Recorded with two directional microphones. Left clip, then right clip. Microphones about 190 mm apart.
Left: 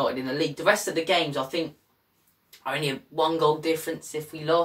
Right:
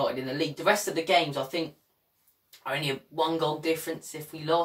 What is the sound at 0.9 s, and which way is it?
Speech, centre (ahead or behind).